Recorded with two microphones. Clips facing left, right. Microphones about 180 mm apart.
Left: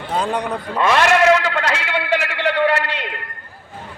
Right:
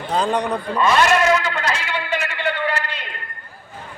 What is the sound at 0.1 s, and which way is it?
Speech, 5° left (ahead or behind).